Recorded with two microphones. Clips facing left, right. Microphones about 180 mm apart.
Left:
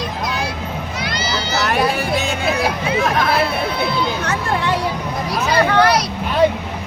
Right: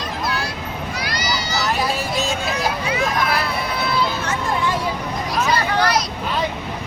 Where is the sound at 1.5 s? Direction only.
60° left (ahead or behind).